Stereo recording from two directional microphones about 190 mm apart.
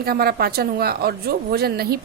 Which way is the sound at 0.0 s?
55° right (ahead or behind).